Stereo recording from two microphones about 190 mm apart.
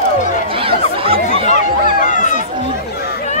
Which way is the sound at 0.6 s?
30° right (ahead or behind).